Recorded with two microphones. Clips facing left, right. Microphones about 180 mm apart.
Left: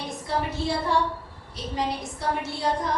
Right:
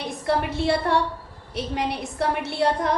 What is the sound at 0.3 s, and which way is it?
A woman's voice, 65° right (ahead or behind).